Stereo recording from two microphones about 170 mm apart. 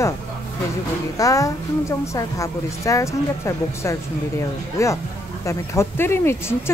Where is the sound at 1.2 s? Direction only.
20° left (ahead or behind).